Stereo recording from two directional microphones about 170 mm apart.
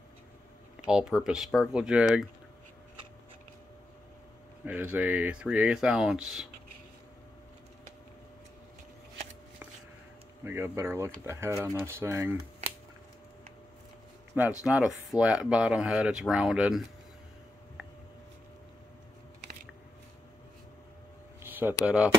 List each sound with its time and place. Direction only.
0.8 s speech: 5° right (ahead or behind)
4.6 s speech: 10° right (ahead or behind)
10.4 s speech: 15° right (ahead or behind)
14.6 s speech: 5° right (ahead or behind)
21.4 s a sound: 10° right (ahead or behind)
21.8 s speech: 5° right (ahead or behind)